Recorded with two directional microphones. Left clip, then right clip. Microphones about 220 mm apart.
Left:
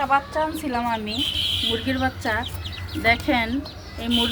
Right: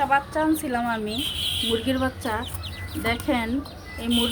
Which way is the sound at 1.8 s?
15° right (ahead or behind).